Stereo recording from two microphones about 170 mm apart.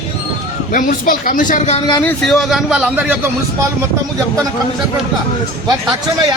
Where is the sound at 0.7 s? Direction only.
55° left (ahead or behind).